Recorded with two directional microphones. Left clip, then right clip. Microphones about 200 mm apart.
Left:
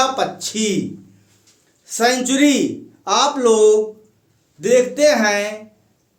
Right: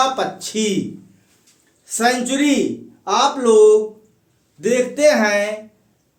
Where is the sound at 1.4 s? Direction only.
25° left (ahead or behind).